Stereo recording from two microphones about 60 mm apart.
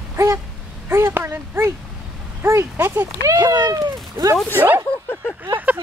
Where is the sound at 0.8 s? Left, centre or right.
Right.